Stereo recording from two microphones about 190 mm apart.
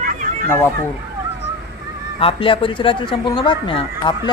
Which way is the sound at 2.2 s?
30° left (ahead or behind).